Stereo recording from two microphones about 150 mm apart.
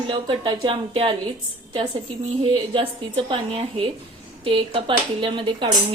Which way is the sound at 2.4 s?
35° right (ahead or behind).